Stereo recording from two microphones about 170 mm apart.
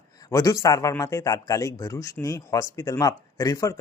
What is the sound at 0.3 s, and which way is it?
Speech, 20° left (ahead or behind).